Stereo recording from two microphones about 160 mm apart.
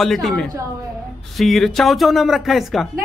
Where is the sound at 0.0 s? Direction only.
Centre (ahead or behind).